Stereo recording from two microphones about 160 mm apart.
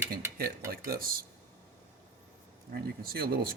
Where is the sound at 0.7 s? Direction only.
65° right (ahead or behind).